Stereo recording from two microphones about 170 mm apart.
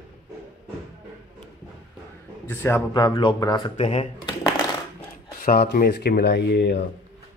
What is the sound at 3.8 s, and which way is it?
Speech, 40° left (ahead or behind).